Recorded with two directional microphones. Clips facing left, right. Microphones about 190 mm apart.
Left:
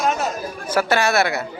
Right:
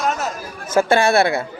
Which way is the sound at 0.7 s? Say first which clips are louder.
Right 4 dB; 25° right (ahead or behind).